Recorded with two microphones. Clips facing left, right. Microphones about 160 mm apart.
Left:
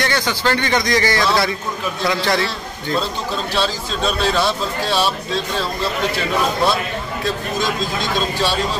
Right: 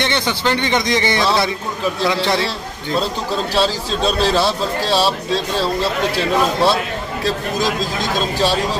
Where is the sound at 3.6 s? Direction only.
35° right (ahead or behind).